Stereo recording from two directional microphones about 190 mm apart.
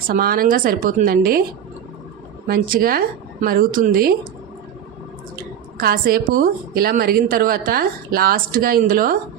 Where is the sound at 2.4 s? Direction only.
50° right (ahead or behind).